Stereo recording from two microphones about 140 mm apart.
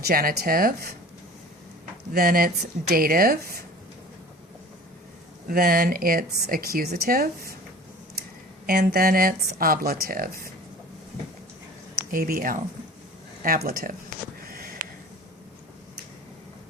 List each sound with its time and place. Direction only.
0.1 s speech: 90° right
2.1 s speech: 90° right
5.5 s speech: 90° right
8.6 s speech: 90° right
12.1 s speech: 85° right
14.4 s sniff: 90° right